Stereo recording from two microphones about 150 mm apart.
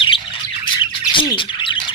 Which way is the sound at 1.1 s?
35° left (ahead or behind).